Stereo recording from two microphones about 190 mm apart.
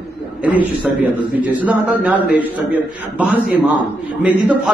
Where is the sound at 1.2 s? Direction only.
10° right (ahead or behind).